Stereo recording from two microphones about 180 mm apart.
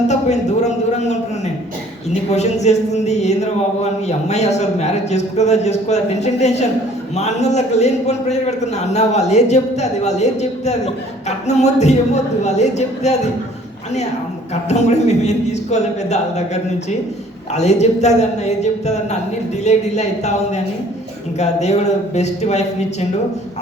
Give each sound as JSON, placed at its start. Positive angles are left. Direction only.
{"t": 0.1, "sound": "a sound", "side_deg": 40}
{"t": 2.3, "sound": "a man's voice", "side_deg": 40}
{"t": 14.5, "sound": "a man's voice", "side_deg": 40}
{"t": 17.5, "sound": "a man's voice", "side_deg": 40}